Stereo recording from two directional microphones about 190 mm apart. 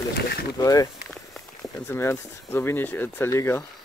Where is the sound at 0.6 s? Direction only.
20° left (ahead or behind).